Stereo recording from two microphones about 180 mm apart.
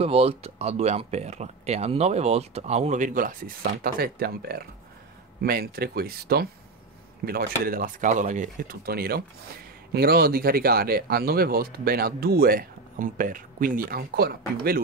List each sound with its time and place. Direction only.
0.0 s speech: 35° right (ahead or behind); by 14.8 s 60° right (ahead or behind)